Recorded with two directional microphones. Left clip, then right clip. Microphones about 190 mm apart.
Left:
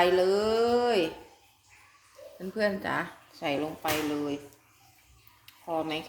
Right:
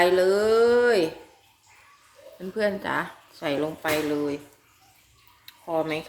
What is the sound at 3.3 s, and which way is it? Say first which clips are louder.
Speech: right 4 dB; 25° right (ahead or behind).